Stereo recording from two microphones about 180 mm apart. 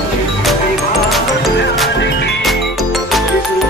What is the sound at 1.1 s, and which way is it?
Music, centre (ahead or behind).